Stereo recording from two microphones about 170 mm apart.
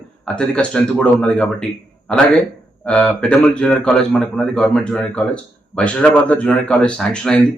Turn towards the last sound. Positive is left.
turn(degrees=5)  # may be behind; listen again after turning